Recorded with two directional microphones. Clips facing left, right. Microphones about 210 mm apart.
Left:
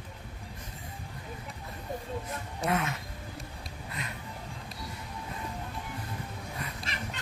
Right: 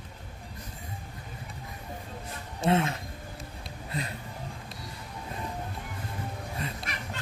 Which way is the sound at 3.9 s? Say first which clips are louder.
Right 7 dB; 30° right (ahead or behind).